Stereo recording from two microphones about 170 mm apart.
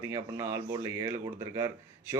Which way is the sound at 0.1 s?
20° right (ahead or behind).